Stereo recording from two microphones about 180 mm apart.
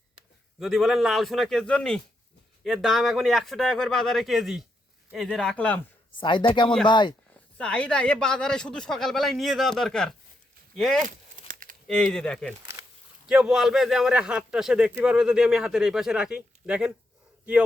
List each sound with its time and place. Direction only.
0.6 s speech: centre (ahead or behind)
6.1 s speech: 25° left (ahead or behind)
7.6 s speech: 5° left (ahead or behind)
11.4 s crumpling: 50° right (ahead or behind)
11.9 s speech: 5° left (ahead or behind)